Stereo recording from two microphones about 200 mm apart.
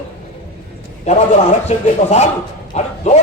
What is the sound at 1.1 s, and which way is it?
Speech, 35° left (ahead or behind).